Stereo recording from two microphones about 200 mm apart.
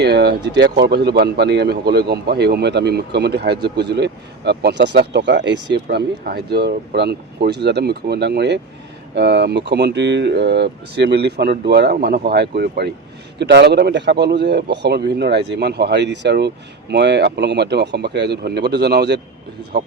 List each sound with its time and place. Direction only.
0.0 s speech: 55° right (ahead or behind)
5.7 s speech: 50° right (ahead or behind)